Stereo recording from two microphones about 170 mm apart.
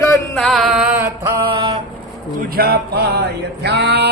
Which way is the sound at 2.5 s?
65° right (ahead or behind).